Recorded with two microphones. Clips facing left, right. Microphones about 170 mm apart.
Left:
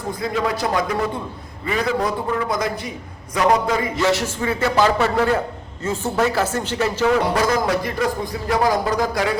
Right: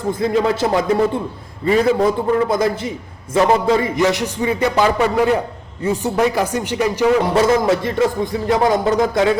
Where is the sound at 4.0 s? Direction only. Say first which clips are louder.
Right 3 dB; 15° right (ahead or behind).